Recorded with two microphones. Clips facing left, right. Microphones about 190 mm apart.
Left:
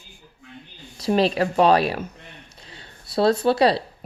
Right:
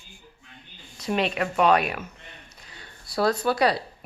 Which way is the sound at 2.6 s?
30° left (ahead or behind).